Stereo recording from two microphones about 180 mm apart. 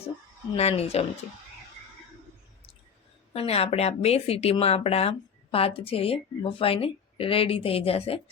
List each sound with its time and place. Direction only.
0.5 s speech: 35° left (ahead or behind)
3.3 s speech: 35° left (ahead or behind)